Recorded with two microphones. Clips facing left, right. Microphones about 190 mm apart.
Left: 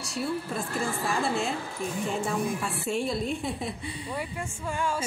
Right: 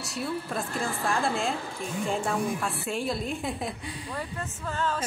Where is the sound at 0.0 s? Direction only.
Centre (ahead or behind).